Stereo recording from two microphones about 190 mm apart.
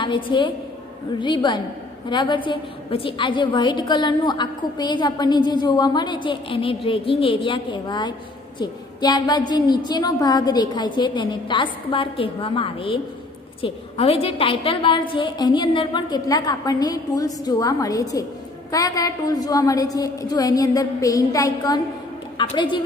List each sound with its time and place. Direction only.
0.0 s a woman's voice: 25° left (ahead or behind)